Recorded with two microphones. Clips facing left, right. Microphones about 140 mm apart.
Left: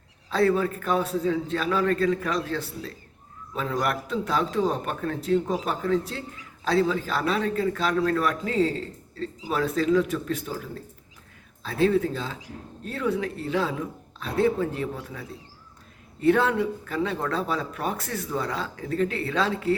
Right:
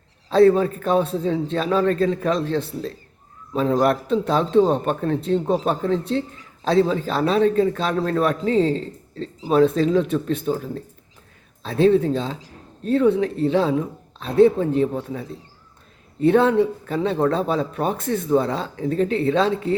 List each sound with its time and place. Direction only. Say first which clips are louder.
0.3 s speech: right 8 dB; 25° right (ahead or behind)